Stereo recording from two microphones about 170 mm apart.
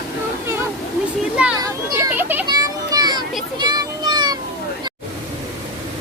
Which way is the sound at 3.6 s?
25° right (ahead or behind).